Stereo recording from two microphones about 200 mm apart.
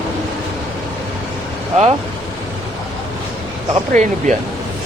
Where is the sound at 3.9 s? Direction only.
35° right (ahead or behind).